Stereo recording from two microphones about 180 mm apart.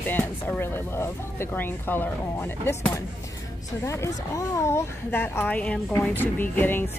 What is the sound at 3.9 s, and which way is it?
Speech, 15° left (ahead or behind).